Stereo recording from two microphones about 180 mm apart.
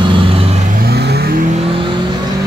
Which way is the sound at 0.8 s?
60° right (ahead or behind).